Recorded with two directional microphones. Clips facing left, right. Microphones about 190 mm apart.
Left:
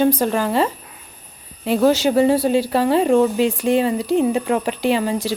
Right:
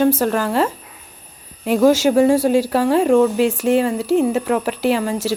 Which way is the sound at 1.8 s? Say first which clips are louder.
Right 2 dB; 10° right (ahead or behind).